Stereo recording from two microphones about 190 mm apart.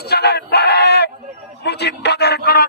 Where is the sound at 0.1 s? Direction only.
60° left (ahead or behind).